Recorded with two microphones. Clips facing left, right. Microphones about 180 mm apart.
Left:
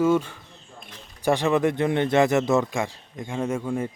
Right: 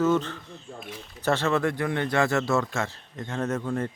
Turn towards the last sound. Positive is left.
turn(degrees=10)  # may be behind; listen again after turning